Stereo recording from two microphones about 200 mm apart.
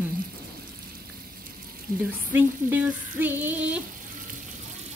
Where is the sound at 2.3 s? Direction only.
10° right (ahead or behind).